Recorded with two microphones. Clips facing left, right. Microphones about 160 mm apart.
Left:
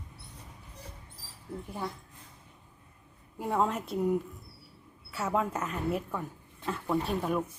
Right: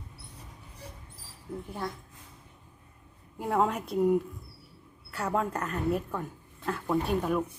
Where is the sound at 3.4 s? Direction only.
Centre (ahead or behind).